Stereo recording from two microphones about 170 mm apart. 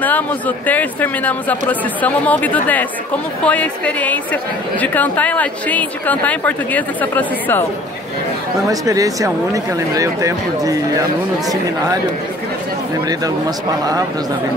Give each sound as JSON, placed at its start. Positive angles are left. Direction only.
{"t": 0.0, "sound": "a woman's voice", "side_deg": 10}
{"t": 8.6, "sound": "speech", "side_deg": -20}
{"t": 13.2, "sound": "speech", "side_deg": -20}